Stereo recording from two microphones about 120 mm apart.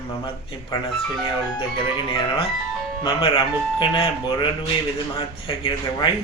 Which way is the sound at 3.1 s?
45° left (ahead or behind).